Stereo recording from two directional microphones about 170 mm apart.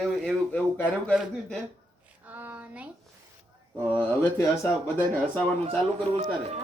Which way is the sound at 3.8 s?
10° left (ahead or behind).